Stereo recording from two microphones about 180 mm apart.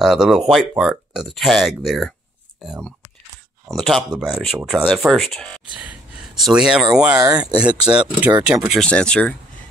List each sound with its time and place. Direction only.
0.0 s speech: centre (ahead or behind)
7.2 s speech: 20° right (ahead or behind)
8.0 s speech: 10° right (ahead or behind)
8.8 s speech: 5° left (ahead or behind)